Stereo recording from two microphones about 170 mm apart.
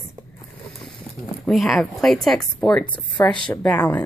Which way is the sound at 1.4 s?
Centre (ahead or behind).